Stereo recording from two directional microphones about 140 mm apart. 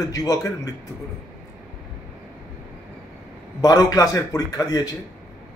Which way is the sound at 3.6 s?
30° left (ahead or behind).